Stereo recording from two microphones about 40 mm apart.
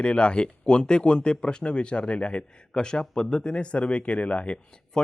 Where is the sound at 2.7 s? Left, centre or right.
Centre; by 4.5 s left.